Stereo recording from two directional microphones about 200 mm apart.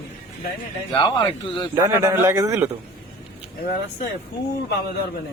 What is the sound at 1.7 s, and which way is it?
Speech, 15° right (ahead or behind).